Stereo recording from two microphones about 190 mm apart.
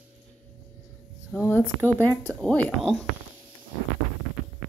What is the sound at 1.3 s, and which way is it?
A woman's voice, 10° left (ahead or behind).